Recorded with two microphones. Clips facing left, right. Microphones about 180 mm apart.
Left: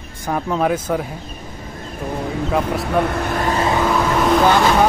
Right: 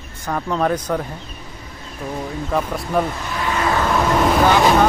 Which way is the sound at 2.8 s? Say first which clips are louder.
Left 2 dB; 70° left (ahead or behind).